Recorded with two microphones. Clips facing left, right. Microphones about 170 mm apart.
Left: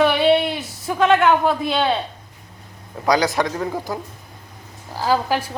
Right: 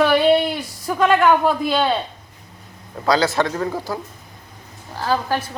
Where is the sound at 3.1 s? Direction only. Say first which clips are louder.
Even; 15° left (ahead or behind).